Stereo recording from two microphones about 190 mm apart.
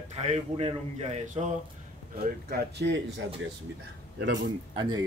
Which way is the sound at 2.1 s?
50° right (ahead or behind).